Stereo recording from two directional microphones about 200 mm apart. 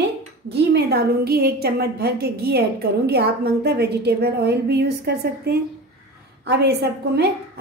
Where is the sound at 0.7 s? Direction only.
50° right (ahead or behind).